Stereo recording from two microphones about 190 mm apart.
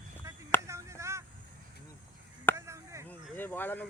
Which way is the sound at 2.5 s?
15° right (ahead or behind).